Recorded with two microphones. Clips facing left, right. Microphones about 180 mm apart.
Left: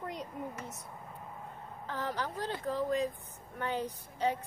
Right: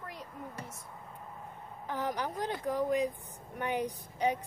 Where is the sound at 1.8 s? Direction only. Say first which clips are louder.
Right 2 dB; 15° right (ahead or behind).